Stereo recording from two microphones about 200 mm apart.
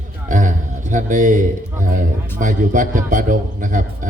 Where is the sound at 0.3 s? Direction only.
40° right (ahead or behind).